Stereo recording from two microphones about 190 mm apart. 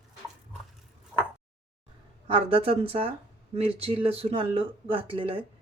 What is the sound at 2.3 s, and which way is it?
Speech, 30° right (ahead or behind).